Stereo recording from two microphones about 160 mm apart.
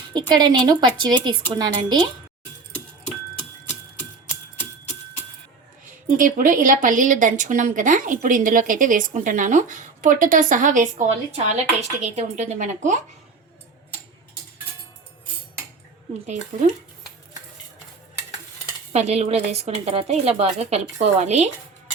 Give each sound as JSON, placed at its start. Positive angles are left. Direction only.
{"t": 0.1, "sound": "speech", "side_deg": -25}
{"t": 6.1, "sound": "a woman's voice", "side_deg": -55}
{"t": 16.2, "sound": "a woman's voice", "side_deg": -45}
{"t": 18.9, "sound": "a woman's voice", "side_deg": -40}